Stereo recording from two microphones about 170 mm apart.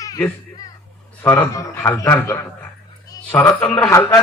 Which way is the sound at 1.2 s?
15° left (ahead or behind).